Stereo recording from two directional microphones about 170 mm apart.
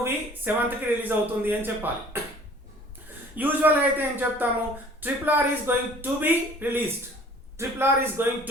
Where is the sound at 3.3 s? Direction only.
10° right (ahead or behind).